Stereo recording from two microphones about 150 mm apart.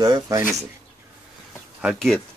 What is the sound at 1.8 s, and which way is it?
Speech, centre (ahead or behind).